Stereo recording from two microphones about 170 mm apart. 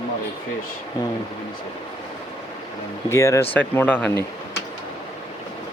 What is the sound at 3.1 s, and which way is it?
Speech, 15° left (ahead or behind).